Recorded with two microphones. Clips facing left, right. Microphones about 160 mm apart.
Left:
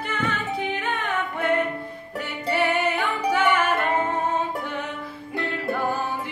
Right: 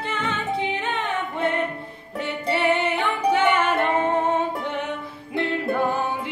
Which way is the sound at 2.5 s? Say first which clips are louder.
Right 1 dB; 25° right (ahead or behind).